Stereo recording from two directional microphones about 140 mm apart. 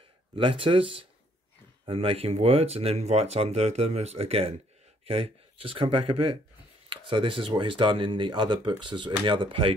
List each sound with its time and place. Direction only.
0.4 s speech: 40° right (ahead or behind)